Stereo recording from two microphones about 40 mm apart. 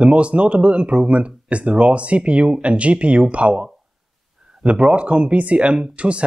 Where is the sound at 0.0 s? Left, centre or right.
Right.